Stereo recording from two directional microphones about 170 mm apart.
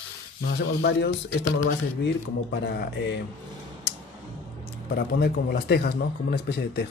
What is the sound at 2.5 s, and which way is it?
Speech, 85° left.